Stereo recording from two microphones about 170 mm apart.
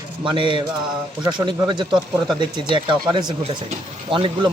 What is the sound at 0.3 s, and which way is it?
A man's voice, 30° right (ahead or behind).